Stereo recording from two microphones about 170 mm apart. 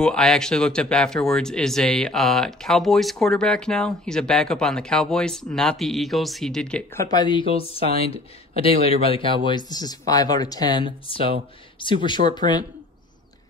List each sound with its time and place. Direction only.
0.0 s speech: 5° left (ahead or behind); by 12.6 s 25° left (ahead or behind)